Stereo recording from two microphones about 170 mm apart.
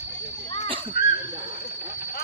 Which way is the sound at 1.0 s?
65° left (ahead or behind).